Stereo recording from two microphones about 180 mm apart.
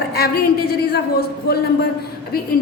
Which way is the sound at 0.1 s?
60° left (ahead or behind).